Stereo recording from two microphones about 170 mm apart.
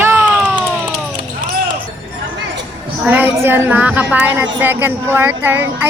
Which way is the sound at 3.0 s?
10° right (ahead or behind).